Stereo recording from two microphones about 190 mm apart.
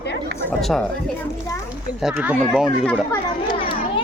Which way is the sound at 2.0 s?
5° right (ahead or behind).